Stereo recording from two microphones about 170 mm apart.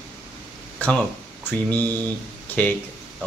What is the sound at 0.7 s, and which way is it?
Speech, 10° left (ahead or behind).